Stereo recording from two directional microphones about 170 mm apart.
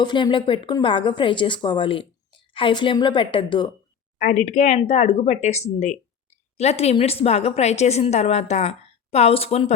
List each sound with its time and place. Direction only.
0.0 s speech: 25° left (ahead or behind)
4.2 s a woman's voice: 45° left (ahead or behind)